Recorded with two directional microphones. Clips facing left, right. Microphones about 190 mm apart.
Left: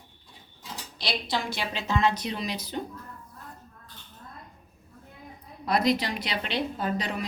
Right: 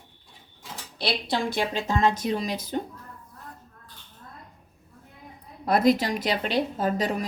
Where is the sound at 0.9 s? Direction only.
55° right (ahead or behind).